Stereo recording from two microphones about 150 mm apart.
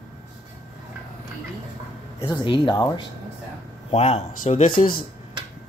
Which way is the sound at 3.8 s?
40° left (ahead or behind).